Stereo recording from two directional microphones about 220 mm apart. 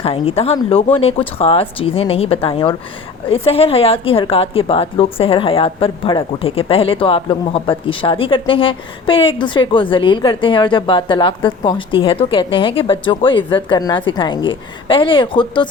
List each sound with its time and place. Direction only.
0.0 s a woman's voice: 25° left (ahead or behind)